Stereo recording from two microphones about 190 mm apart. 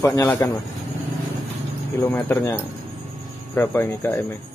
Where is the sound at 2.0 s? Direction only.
10° left (ahead or behind).